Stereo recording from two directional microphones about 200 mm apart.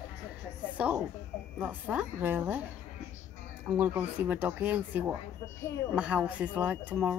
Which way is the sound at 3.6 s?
10° right (ahead or behind).